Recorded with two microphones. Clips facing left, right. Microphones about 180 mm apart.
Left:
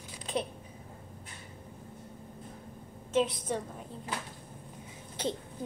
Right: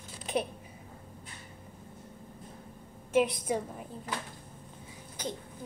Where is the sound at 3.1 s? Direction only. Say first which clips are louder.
Right 2 dB; 10° right (ahead or behind).